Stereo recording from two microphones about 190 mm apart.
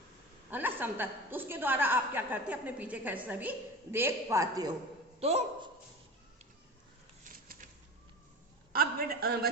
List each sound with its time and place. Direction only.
0.5 s a woman's voice: 10° right (ahead or behind)
5.2 s a man's voice: 30° right (ahead or behind)
8.7 s a woman's voice: 55° right (ahead or behind)